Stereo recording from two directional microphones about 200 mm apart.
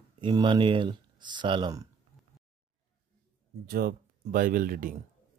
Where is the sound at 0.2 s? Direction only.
25° right (ahead or behind).